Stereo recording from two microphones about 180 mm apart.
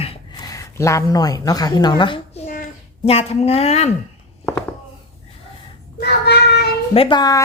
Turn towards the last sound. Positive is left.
turn(degrees=20)  # may be behind; listen again after turning